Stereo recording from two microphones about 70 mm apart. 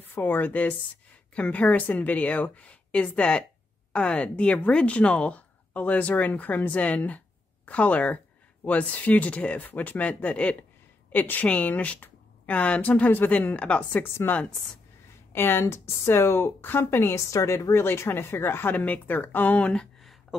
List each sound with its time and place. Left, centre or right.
0.1 s a woman's voice: left
14.0 s a woman's voice: left
17.2 s a woman's voice: left
19.7 s a sound: centre